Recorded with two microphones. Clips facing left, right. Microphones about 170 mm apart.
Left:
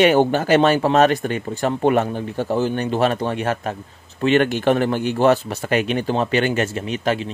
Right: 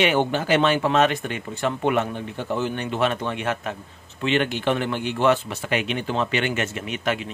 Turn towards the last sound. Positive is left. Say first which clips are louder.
# left 4 dB
turn(degrees=35)  # may be behind; listen again after turning